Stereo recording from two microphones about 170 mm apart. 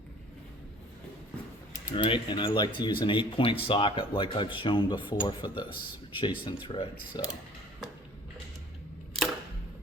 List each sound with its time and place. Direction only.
1.7 s speech: 25° left (ahead or behind)